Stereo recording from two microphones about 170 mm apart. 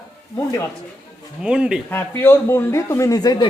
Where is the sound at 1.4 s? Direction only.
5° right (ahead or behind).